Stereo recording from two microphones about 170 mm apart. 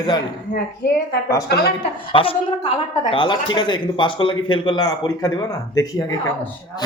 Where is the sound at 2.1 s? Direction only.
30° left (ahead or behind).